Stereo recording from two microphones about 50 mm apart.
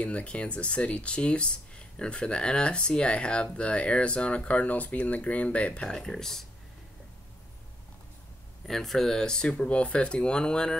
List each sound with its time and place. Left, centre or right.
0.0 s speech: left
5.9 s speech: centre
8.6 s speech: centre